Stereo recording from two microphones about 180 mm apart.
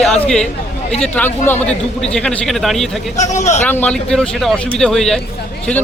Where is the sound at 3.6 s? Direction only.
10° left (ahead or behind).